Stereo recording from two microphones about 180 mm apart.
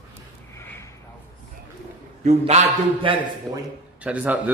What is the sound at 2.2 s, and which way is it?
Speech, 35° right (ahead or behind).